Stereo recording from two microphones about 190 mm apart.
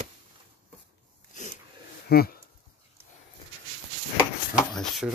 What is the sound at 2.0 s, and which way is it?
Speech, 55° left (ahead or behind).